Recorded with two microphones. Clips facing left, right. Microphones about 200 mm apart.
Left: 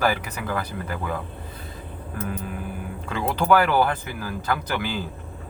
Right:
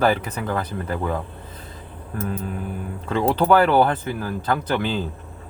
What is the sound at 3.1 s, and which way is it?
Speech, 30° right (ahead or behind).